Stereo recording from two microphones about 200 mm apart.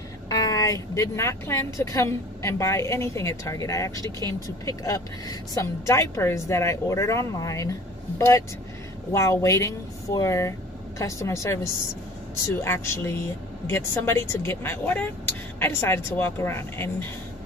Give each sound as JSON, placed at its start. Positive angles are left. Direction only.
{"t": 0.3, "sound": "speech", "side_deg": 20}
{"t": 9.1, "sound": "speech", "side_deg": 15}